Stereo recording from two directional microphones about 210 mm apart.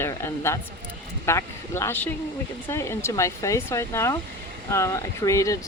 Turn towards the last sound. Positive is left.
turn(degrees=15)  # may be behind; listen again after turning